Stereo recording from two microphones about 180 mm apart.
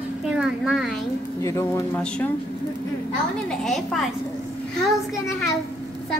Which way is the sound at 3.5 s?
Centre (ahead or behind).